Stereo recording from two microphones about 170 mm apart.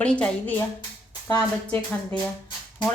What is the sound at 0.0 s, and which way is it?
A woman's voice, 5° left (ahead or behind).